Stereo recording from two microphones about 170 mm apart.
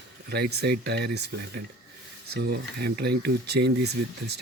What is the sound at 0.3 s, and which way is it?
Speech, 70° right (ahead or behind).